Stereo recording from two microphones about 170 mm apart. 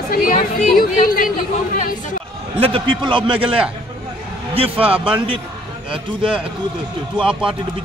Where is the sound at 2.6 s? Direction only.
30° right (ahead or behind).